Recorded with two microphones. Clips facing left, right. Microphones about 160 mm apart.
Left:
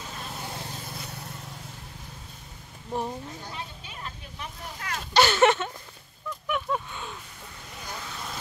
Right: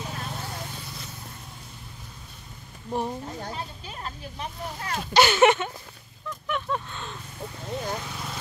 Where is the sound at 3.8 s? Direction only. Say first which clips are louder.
Right 4 dB; 35° right (ahead or behind).